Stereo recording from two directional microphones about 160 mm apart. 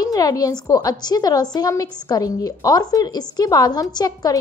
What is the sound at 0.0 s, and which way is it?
A woman's voice, 25° left (ahead or behind).